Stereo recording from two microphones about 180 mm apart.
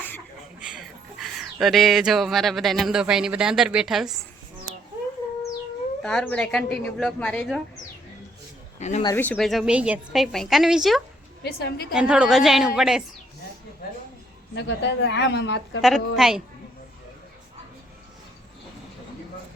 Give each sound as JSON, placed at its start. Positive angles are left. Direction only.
{"t": 0.6, "sound": "speech", "side_deg": 0}
{"t": 6.0, "sound": "a woman's voice", "side_deg": 5}
{"t": 8.8, "sound": "speech", "side_deg": 40}
{"t": 9.1, "sound": "a woman's voice", "side_deg": 10}
{"t": 11.4, "sound": "a woman's voice", "side_deg": 60}
{"t": 11.9, "sound": "a woman's voice", "side_deg": -5}
{"t": 14.5, "sound": "a woman's voice", "side_deg": 75}
{"t": 15.8, "sound": "a woman's voice", "side_deg": 0}